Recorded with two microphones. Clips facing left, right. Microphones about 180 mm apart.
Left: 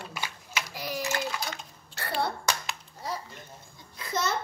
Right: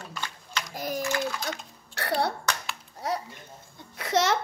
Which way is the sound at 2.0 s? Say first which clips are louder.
Right 3 dB; 70° right (ahead or behind).